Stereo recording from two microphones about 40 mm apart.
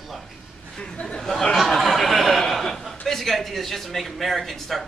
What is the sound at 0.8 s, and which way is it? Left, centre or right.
Speech, left.